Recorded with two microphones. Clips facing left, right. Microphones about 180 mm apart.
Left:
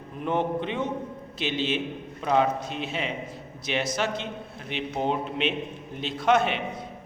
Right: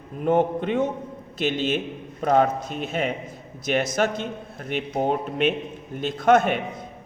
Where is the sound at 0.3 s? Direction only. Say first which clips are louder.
Right 6 dB; 45° right (ahead or behind).